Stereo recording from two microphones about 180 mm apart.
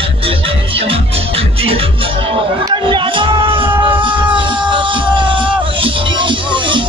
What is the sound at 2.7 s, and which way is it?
Music, 25° right (ahead or behind).